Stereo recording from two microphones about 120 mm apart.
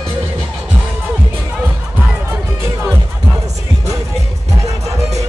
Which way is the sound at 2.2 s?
20° right (ahead or behind).